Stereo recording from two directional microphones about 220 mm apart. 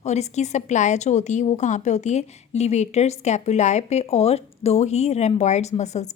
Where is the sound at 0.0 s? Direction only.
30° left (ahead or behind).